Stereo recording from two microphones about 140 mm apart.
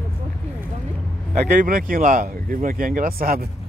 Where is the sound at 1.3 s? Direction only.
70° right (ahead or behind); by 3.4 s 90° right.